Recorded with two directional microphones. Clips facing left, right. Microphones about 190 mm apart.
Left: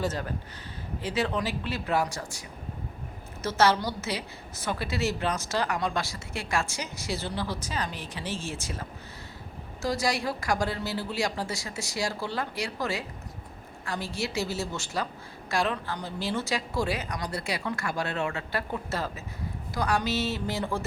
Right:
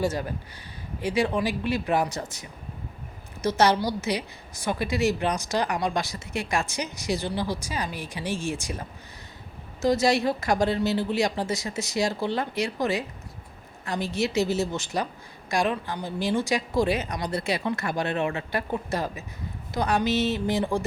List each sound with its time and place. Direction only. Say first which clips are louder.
0.0 s a woman's voice: right 4 dB; 10° right (ahead or behind)
3.4 s a woman's voice: right 2 dB; 15° right (ahead or behind)